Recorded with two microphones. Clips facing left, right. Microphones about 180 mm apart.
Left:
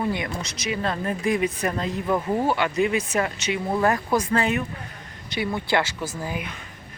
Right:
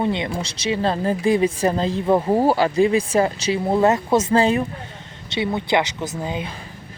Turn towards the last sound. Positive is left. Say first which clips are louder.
# right 4 dB
turn(degrees=-25)  # may be behind; listen again after turning